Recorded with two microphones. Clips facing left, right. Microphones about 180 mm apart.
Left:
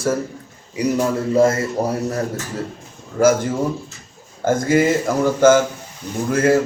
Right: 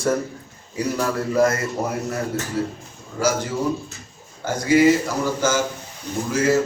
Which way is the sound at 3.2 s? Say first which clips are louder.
Left 6 dB; 50° left (ahead or behind).